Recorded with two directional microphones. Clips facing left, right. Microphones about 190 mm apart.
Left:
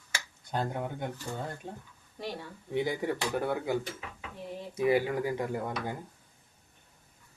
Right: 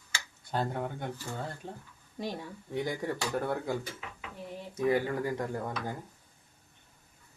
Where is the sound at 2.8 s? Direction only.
5° left (ahead or behind).